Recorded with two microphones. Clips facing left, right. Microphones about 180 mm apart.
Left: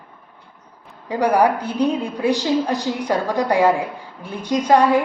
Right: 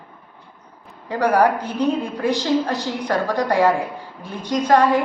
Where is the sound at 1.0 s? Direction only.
15° left (ahead or behind).